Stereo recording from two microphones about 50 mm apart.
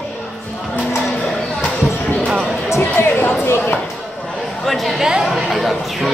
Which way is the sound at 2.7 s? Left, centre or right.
Left.